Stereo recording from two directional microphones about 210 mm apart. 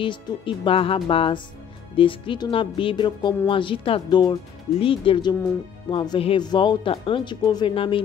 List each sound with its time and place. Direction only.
0.0 s speech: 25° left (ahead or behind)